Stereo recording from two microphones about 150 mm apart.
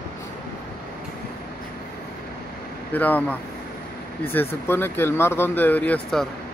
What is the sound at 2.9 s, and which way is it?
Speech, 10° left (ahead or behind).